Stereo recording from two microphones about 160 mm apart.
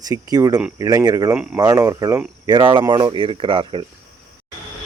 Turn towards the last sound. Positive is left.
turn(degrees=-35)  # may be behind; listen again after turning